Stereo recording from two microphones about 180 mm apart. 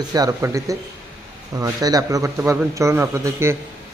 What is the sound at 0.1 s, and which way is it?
Speech, 20° right (ahead or behind).